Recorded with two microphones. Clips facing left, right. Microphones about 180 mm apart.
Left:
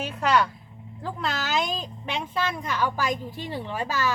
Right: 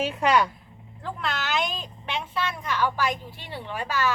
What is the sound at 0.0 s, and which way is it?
Speech, 10° right (ahead or behind).